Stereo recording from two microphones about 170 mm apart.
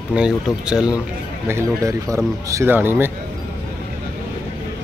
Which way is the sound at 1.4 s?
15° right (ahead or behind).